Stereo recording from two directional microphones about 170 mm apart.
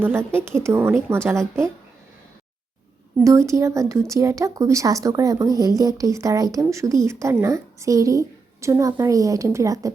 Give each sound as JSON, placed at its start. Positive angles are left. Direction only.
{"t": 0.0, "sound": "a woman's voice", "side_deg": -15}
{"t": 3.2, "sound": "a woman's voice", "side_deg": -15}